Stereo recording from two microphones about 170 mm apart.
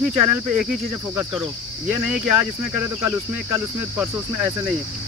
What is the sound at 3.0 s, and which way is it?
Cricket, 15° right (ahead or behind).